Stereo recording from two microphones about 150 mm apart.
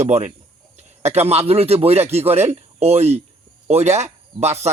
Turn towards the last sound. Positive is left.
turn(degrees=-45)  # may be behind; listen again after turning